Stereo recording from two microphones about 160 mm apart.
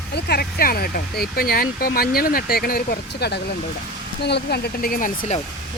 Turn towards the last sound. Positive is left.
turn(degrees=60)  # may be behind; listen again after turning